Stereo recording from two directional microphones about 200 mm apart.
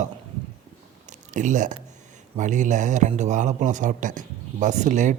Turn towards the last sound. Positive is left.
turn(degrees=-40)  # may be behind; listen again after turning